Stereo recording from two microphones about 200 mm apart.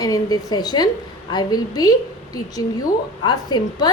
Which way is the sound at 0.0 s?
20° left (ahead or behind).